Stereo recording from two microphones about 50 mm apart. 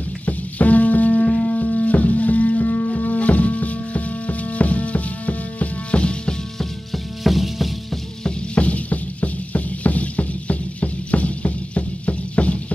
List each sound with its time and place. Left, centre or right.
0.2 s music: left
6.6 s music: centre
8.2 s music: left